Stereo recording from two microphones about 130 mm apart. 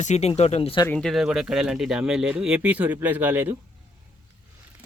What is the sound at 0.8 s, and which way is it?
Speech, 5° left (ahead or behind).